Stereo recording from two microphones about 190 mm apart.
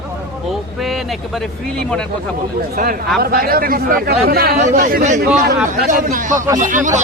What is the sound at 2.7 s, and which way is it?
Speech, 50° right (ahead or behind).